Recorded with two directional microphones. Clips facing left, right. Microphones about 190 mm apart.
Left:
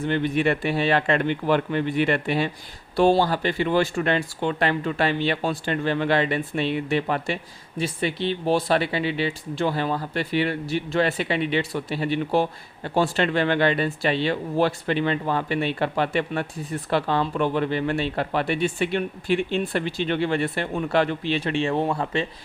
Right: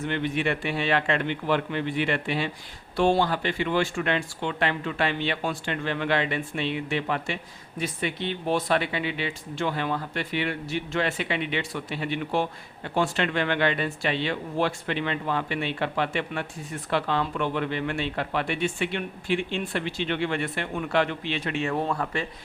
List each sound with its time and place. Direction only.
0.0 s speech: 40° left (ahead or behind)